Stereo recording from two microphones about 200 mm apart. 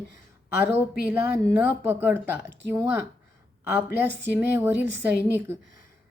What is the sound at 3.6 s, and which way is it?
A woman's voice, 10° right (ahead or behind).